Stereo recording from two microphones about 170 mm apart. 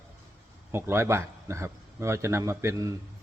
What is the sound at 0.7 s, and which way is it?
Speech, 15° right (ahead or behind).